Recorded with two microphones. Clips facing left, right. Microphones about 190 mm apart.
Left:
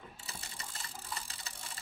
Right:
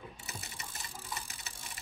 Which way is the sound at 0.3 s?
20° right (ahead or behind).